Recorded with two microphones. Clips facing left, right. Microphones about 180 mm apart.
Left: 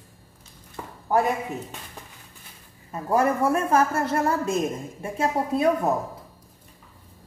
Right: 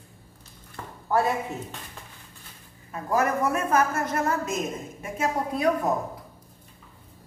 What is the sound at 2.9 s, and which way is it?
A woman's voice, 30° left (ahead or behind).